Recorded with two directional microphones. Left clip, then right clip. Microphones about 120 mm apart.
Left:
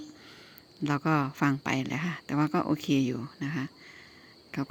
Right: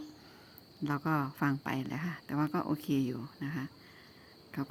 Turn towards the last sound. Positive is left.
turn(degrees=30)  # may be behind; listen again after turning